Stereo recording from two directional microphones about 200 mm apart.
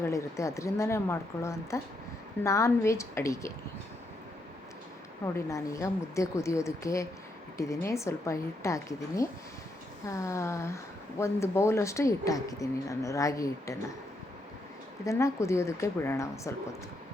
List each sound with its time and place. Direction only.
0.0 s speech: 15° left (ahead or behind)
5.2 s speech: 15° left (ahead or behind)
15.0 s speech: 15° left (ahead or behind)